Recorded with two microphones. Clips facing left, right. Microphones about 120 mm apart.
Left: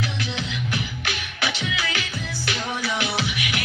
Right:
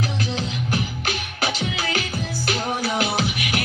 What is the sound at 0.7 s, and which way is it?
Music, 45° right (ahead or behind).